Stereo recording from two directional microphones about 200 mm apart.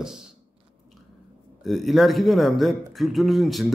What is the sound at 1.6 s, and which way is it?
A man's voice, centre (ahead or behind).